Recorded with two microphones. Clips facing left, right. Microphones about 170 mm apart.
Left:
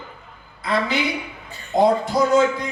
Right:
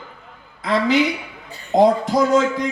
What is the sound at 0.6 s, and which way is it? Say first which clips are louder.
A man's voice: right 5 dB; 90° right.